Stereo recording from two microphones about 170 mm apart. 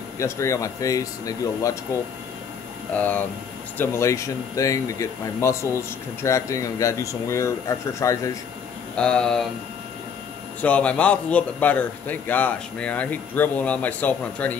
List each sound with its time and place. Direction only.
0.2 s speech: 15° left (ahead or behind)
2.9 s speech: 10° left (ahead or behind)
8.9 s speech: 5° left (ahead or behind)
10.6 s speech: 10° left (ahead or behind)